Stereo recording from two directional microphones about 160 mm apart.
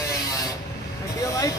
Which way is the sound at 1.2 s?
20° left (ahead or behind).